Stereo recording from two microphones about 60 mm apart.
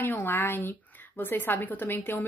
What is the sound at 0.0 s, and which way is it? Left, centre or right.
A woman's voice, left.